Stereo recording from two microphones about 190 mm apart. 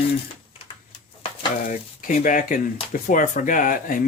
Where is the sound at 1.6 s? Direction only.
45° left (ahead or behind).